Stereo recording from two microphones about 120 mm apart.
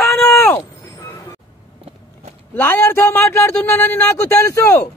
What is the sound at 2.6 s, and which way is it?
Speech, 15° left (ahead or behind).